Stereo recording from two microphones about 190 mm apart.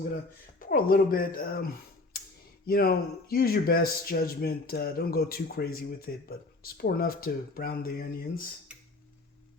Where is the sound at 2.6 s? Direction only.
50° left (ahead or behind).